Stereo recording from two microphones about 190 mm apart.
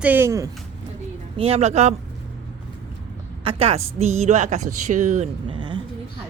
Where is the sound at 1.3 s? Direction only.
30° right (ahead or behind).